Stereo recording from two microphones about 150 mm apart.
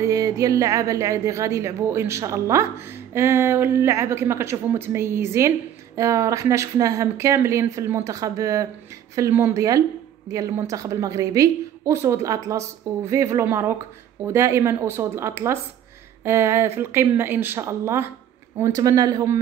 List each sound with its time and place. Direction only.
0.0 s a woman's voice: 20° right (ahead or behind)